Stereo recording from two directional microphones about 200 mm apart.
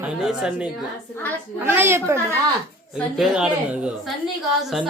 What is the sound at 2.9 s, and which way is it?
A woman's voice, centre (ahead or behind).